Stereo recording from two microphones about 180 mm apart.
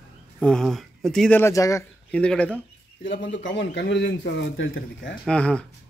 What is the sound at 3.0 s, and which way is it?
A man's voice, 80° left.